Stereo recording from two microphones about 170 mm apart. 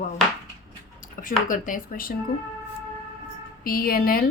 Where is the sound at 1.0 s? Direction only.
50° left (ahead or behind).